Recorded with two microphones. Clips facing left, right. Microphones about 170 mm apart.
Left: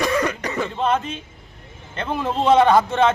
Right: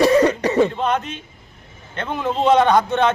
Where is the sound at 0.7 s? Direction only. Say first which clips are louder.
Even; centre (ahead or behind).